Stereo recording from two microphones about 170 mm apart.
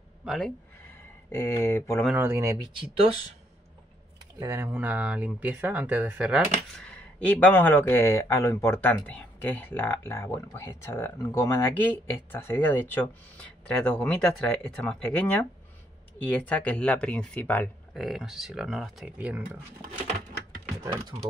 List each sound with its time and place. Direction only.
0.2 s speech: centre (ahead or behind)
1.3 s speech: 15° left (ahead or behind)
2.0 s speech: 10° right (ahead or behind)
2.7 s speech: 30° right (ahead or behind)
4.4 s speech: 15° right (ahead or behind)
6.9 s speech: 5° left (ahead or behind)
18.0 s speech: centre (ahead or behind)